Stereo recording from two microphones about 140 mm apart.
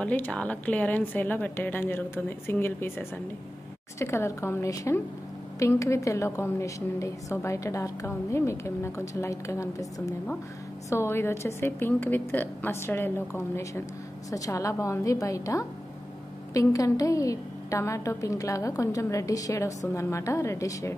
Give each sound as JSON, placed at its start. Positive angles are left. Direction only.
{"t": 0.0, "sound": "a woman's voice", "side_deg": 10}